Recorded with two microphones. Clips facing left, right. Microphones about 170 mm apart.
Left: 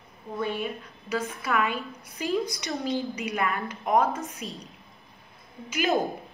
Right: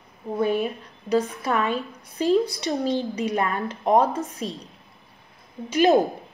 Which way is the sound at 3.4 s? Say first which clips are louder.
Right 4 dB; 35° right (ahead or behind).